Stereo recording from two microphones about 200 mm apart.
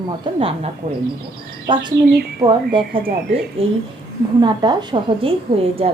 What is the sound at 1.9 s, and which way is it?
Speech, 55° right (ahead or behind).